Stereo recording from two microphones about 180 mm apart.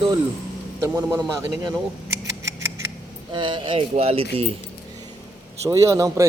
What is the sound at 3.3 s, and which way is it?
Speech, 25° right (ahead or behind).